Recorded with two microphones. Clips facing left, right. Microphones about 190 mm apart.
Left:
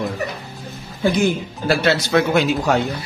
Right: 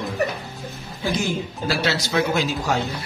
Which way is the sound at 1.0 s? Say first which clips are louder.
Left 6 dB; 55° left (ahead or behind).